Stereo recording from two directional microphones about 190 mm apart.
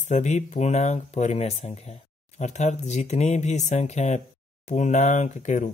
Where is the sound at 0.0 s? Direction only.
40° left (ahead or behind).